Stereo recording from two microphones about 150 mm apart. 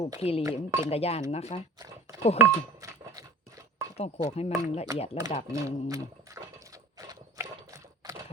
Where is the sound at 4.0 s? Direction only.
45° left (ahead or behind).